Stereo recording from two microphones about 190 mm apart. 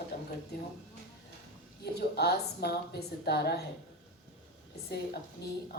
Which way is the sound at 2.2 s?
55° left (ahead or behind).